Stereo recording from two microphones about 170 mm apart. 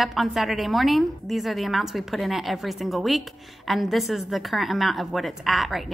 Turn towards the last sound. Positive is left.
turn(degrees=0)  # may be behind; listen again after turning